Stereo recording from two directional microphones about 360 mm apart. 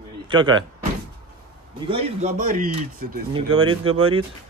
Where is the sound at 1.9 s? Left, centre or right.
Centre.